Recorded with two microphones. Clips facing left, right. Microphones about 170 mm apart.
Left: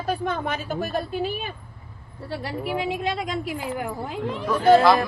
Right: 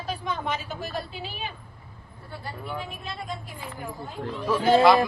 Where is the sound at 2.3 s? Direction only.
90° left.